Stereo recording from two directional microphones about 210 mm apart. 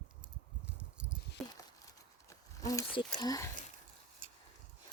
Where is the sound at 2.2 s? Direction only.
15° left (ahead or behind).